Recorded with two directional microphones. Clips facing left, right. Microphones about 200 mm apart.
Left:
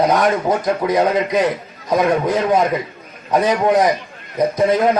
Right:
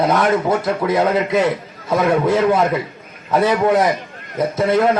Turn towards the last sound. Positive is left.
turn(degrees=15)  # may be behind; listen again after turning